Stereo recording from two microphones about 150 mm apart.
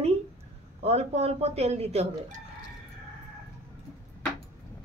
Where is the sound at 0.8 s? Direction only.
45° right (ahead or behind).